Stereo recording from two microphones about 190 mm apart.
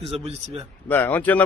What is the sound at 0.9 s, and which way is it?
Speech, 10° left (ahead or behind).